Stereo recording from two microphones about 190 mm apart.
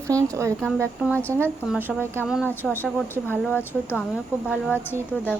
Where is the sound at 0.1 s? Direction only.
15° right (ahead or behind).